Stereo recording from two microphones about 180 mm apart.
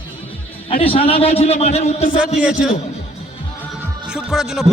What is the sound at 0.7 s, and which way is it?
A man's voice, 30° left (ahead or behind).